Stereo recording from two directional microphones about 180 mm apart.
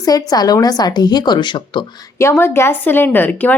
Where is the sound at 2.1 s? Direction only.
15° left (ahead or behind).